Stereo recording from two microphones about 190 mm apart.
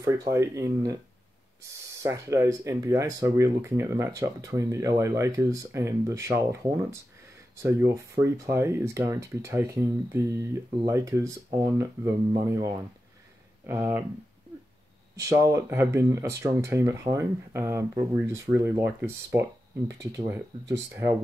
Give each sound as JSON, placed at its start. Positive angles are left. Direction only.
{"t": 0.0, "sound": "speech", "side_deg": -15}
{"t": 2.0, "sound": "speech", "side_deg": -15}
{"t": 13.7, "sound": "speech", "side_deg": -15}
{"t": 15.1, "sound": "speech", "side_deg": -15}